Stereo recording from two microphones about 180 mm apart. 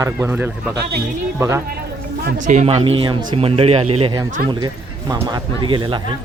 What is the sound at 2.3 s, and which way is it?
Speech, 45° right (ahead or behind).